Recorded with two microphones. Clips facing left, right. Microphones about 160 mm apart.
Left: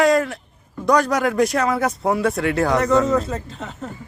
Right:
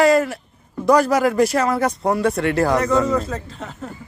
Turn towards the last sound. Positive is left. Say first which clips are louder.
# even
turn(degrees=0)  # may be behind; listen again after turning